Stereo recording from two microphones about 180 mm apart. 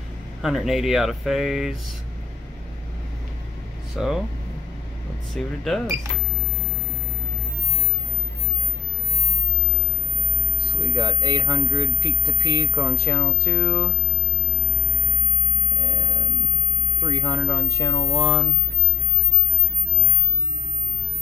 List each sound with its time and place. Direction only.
0.4 s speech: centre (ahead or behind)
3.9 s speech: centre (ahead or behind)
5.3 s speech: centre (ahead or behind)
11.0 s speech: 20° left (ahead or behind)
17.1 s speech: 20° left (ahead or behind)